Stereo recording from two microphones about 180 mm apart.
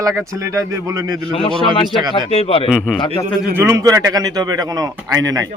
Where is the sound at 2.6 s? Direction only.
5° right (ahead or behind).